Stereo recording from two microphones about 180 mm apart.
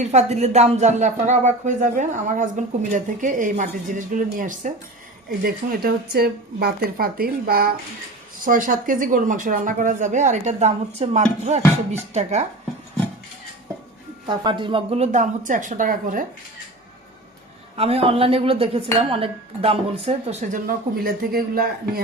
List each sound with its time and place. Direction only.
0.0 s speech: 40° right (ahead or behind)
14.3 s speech: 25° right (ahead or behind); by 16.2 s 50° right (ahead or behind)
17.7 s speech: 35° right (ahead or behind)
20.7 s speech: 55° right (ahead or behind)